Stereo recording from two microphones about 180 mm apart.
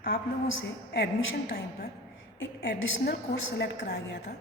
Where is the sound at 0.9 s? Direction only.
70° left (ahead or behind).